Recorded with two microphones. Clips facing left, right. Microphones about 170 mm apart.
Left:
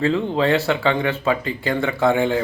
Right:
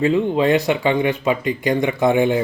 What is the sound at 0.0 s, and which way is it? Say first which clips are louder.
Speech: right 3 dB; 15° right (ahead or behind).